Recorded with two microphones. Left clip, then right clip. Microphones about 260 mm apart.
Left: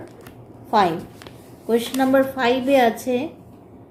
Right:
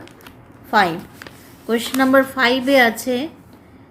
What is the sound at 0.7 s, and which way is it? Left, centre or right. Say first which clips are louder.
A woman's voice: right 2 dB; right.